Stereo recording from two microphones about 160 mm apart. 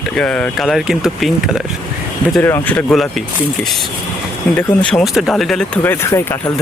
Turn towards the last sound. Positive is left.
turn(degrees=15)  # may be behind; listen again after turning